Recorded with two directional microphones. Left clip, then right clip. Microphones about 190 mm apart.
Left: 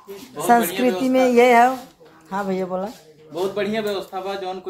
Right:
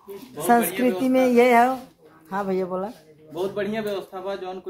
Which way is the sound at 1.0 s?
10° right (ahead or behind).